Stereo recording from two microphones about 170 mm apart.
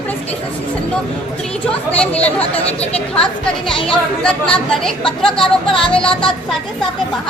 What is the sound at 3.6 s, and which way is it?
Speech, 30° left (ahead or behind).